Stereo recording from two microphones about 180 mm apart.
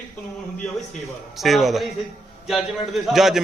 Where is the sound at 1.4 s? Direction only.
Centre (ahead or behind).